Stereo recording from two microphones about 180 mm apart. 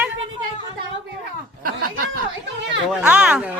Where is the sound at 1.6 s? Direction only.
55° right (ahead or behind).